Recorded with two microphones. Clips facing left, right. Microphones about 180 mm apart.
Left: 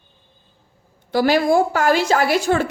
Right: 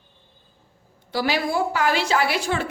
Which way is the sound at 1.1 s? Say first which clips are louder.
Left 8 dB; 50° left (ahead or behind).